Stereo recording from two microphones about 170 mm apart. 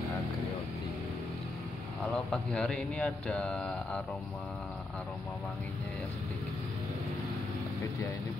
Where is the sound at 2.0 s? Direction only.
5° left (ahead or behind).